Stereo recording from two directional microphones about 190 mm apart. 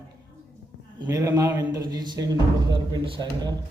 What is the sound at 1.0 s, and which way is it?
A man's voice, 15° right (ahead or behind).